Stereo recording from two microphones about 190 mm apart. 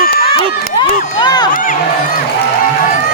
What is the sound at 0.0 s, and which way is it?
Crowd, 50° left (ahead or behind).